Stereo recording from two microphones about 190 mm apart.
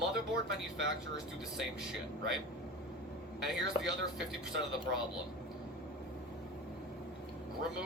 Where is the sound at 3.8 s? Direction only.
30° left (ahead or behind).